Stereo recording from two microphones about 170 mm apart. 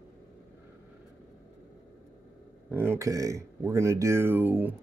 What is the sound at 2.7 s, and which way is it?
Speech, 15° right (ahead or behind).